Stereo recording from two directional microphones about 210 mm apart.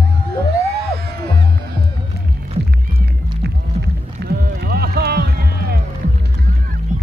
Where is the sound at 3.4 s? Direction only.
50° right (ahead or behind).